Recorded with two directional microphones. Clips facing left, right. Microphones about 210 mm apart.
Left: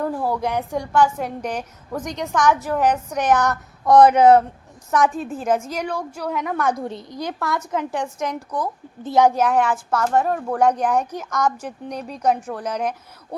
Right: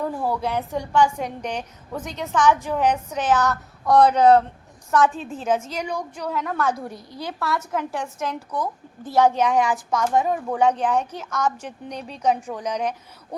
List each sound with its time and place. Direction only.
0.2 s a woman's voice: 15° left (ahead or behind)
3.4 s child singing: centre (ahead or behind)
3.9 s a woman's voice: 20° left (ahead or behind)
5.8 s speech: 15° right (ahead or behind)
6.2 s a woman's voice: 10° left (ahead or behind)
12.4 s speech: 10° right (ahead or behind)
12.6 s a woman's voice: 5° left (ahead or behind)